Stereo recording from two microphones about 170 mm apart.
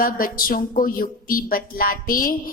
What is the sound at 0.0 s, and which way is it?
Speech, 55° left (ahead or behind).